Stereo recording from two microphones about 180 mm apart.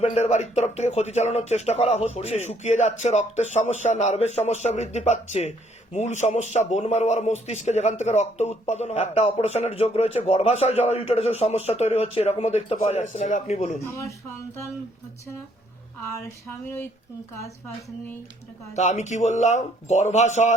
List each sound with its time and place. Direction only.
0.0 s speech: 40° left (ahead or behind)
14.0 s speech: 15° left (ahead or behind)
16.6 s speech: 15° left (ahead or behind)
18.7 s speech: 40° left (ahead or behind)